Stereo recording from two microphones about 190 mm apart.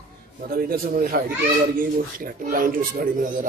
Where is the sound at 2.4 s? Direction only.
50° right (ahead or behind).